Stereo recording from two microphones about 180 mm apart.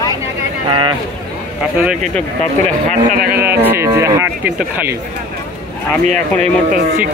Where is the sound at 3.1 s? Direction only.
55° right (ahead or behind).